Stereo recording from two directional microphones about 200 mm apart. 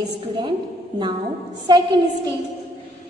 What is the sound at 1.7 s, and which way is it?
Speech, 20° right (ahead or behind).